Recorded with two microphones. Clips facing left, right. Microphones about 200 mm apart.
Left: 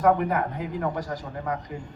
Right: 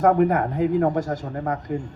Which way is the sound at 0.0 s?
45° right (ahead or behind).